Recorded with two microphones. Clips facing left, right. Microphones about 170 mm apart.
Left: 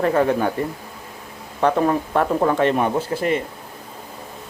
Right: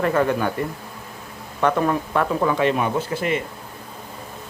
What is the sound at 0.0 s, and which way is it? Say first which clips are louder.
Speech: left 2 dB; 35° left (ahead or behind).